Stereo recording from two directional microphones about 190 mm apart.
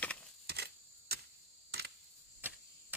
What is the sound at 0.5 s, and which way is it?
Camera, 55° right (ahead or behind).